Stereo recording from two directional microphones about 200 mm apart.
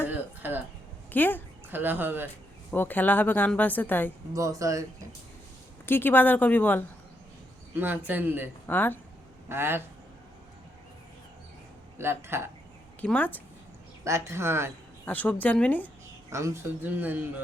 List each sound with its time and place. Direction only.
0.4 s speech: 10° right (ahead or behind)
1.1 s a woman's voice: 10° left (ahead or behind)
1.7 s speech: 10° right (ahead or behind)
2.6 s a woman's voice: 10° left (ahead or behind)
4.4 s speech: 15° right (ahead or behind)
5.8 s a woman's voice: 10° left (ahead or behind)
7.8 s speech: 10° right (ahead or behind)
8.6 s a woman's voice: 10° left (ahead or behind)
9.5 s speech: 10° right (ahead or behind)
11.9 s speech: 10° right (ahead or behind)
13.0 s a woman's voice: 10° left (ahead or behind)
14.0 s speech: 15° right (ahead or behind)
15.0 s a woman's voice: 10° left (ahead or behind)
16.3 s speech: 15° right (ahead or behind)